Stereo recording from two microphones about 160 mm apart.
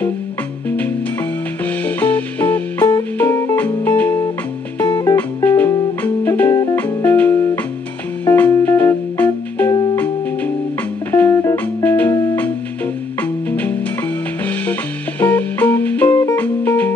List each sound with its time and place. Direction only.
0.7 s music: 10° left (ahead or behind)
13.2 s music: 10° left (ahead or behind)